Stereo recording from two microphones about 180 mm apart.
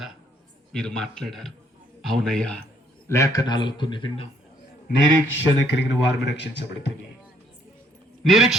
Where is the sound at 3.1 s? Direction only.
20° left (ahead or behind).